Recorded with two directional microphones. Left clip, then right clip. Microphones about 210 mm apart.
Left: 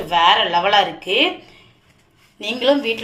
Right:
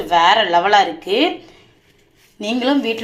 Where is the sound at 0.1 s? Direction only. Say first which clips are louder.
Right 2 dB; 20° right (ahead or behind).